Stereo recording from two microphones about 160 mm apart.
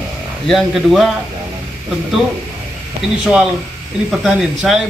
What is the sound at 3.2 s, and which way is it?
Speech, 5° right (ahead or behind).